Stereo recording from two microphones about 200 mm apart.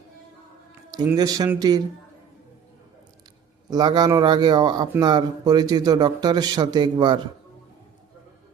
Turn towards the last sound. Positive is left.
turn(degrees=-20)  # may be behind; listen again after turning